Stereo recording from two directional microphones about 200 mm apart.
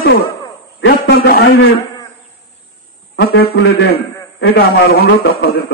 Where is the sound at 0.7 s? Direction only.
65° left (ahead or behind).